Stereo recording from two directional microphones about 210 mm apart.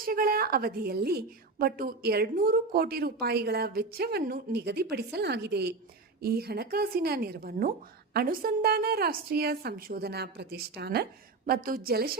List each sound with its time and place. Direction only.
0.0 s a woman's voice: 45° right (ahead or behind)